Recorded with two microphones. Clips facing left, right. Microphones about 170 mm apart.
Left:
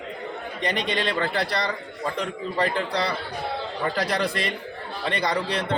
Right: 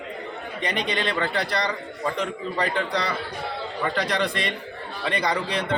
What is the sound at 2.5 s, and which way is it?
Speech, 35° left (ahead or behind).